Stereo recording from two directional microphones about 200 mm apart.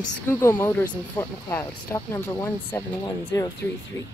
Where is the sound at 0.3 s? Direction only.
15° left (ahead or behind).